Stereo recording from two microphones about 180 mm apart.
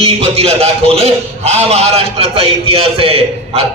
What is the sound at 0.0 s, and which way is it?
A man's voice, 35° right (ahead or behind).